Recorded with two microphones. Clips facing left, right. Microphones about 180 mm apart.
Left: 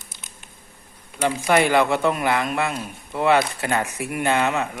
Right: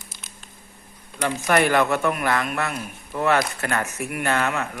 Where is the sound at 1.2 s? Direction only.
10° left (ahead or behind).